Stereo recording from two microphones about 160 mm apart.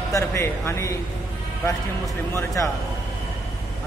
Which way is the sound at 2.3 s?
20° left (ahead or behind).